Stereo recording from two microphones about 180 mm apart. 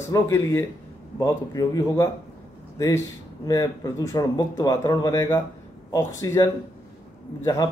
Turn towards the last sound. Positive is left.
turn(degrees=20)  # may be behind; listen again after turning